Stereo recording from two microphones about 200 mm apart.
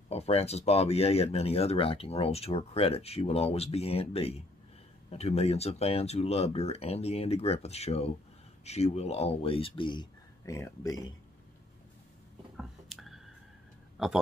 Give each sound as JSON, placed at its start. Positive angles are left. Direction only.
{"t": 0.1, "sound": "speech", "side_deg": 30}
{"t": 12.5, "sound": "a sound", "side_deg": 0}
{"t": 13.9, "sound": "speech", "side_deg": 0}